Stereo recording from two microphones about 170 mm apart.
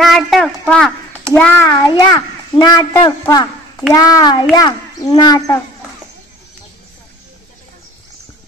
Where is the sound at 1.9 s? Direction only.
25° left (ahead or behind).